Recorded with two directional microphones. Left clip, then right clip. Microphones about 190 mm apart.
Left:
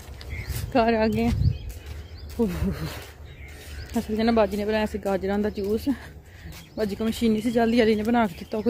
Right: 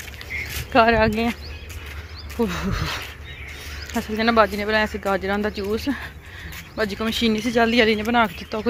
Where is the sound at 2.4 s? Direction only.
20° left (ahead or behind).